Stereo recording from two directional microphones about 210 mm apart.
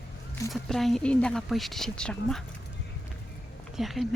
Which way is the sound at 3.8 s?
Centre (ahead or behind).